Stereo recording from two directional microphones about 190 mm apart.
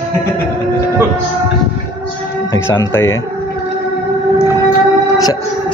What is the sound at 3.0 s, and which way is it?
Speech, 90° left.